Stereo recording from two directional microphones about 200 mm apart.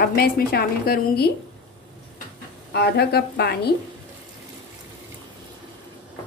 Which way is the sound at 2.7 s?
55° left (ahead or behind).